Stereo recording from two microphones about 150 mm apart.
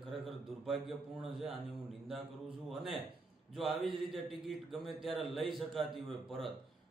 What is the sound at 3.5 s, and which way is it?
A man's voice, centre (ahead or behind).